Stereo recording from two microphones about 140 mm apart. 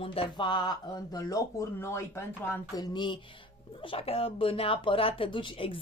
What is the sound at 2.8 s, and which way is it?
Speech, 35° left (ahead or behind).